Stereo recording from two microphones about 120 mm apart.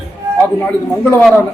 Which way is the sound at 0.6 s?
5° left (ahead or behind).